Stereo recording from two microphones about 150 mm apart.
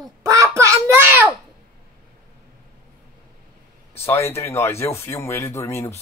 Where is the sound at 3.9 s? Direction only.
15° left (ahead or behind).